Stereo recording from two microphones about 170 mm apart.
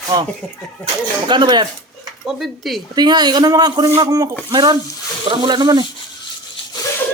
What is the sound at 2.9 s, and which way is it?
Speech, 25° right (ahead or behind).